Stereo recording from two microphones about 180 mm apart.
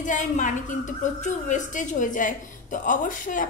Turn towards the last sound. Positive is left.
turn(degrees=45)  # may be behind; listen again after turning